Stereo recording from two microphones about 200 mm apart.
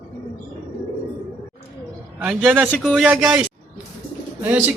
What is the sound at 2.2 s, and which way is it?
A man's voice, 5° right (ahead or behind).